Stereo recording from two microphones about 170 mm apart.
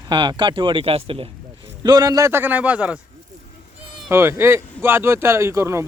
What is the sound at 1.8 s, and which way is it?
Speech, 20° right (ahead or behind).